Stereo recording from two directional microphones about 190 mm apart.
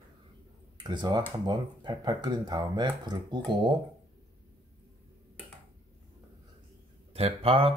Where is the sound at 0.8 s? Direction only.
25° right (ahead or behind).